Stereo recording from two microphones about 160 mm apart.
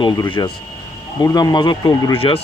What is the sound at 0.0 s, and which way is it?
Speech, 30° left (ahead or behind).